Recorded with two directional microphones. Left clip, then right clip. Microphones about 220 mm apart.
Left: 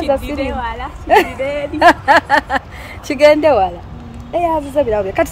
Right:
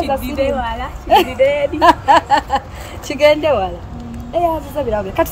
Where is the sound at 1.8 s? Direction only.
15° left (ahead or behind).